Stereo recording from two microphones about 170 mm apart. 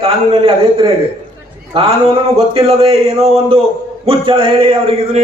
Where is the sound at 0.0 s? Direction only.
35° right (ahead or behind).